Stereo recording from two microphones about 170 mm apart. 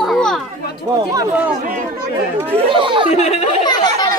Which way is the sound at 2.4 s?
30° right (ahead or behind).